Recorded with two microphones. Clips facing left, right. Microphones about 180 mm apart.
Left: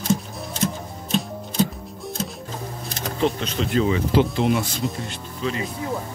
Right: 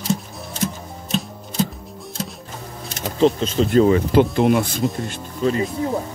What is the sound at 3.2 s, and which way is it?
Speech, 35° right (ahead or behind).